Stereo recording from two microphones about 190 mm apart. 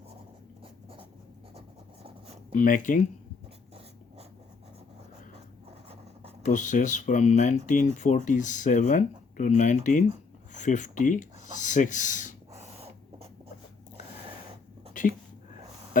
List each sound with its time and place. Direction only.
2.6 s speech: 45° left (ahead or behind)
6.4 s speech: 40° left (ahead or behind)
12.5 s rodents: 30° right (ahead or behind)
15.0 s a sound: 45° left (ahead or behind)